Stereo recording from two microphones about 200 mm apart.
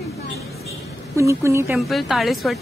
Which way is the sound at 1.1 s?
15° right (ahead or behind).